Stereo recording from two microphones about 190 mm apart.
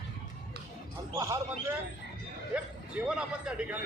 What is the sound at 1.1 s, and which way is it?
A man's voice, 15° right (ahead or behind).